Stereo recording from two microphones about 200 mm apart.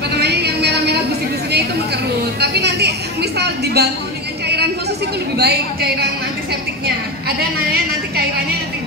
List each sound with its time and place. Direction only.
0.2 s a sound: 55° right (ahead or behind)
2.4 s a woman's voice: 55° right (ahead or behind)
5.4 s a woman's voice: 55° right (ahead or behind)
7.2 s a woman's voice: 50° right (ahead or behind)